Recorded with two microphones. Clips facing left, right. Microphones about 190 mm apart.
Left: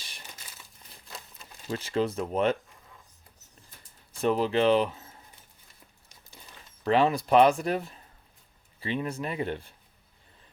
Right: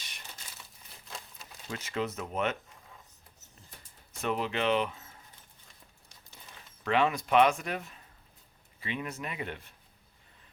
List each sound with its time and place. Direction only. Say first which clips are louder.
1.0 s crumpling: even; centre (ahead or behind)
1.7 s speech: left 6 dB; 30° left (ahead or behind)
4.2 s speech: left 7 dB; 35° left (ahead or behind)
6.8 s speech: left 4 dB; 35° left (ahead or behind)